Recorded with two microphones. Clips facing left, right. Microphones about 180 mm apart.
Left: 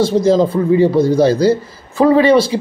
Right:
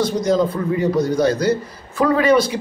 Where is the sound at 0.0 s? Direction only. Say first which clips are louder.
Left 5 dB; 25° left (ahead or behind).